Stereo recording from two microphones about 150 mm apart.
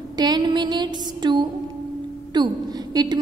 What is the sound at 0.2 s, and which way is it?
A woman's voice, 30° right (ahead or behind).